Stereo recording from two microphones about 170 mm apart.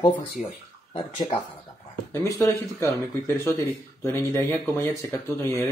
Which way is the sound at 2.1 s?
15° left (ahead or behind).